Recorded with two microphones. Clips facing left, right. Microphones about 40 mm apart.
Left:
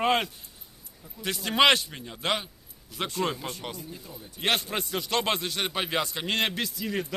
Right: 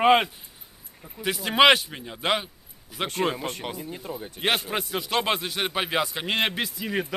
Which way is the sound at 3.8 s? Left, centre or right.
Right.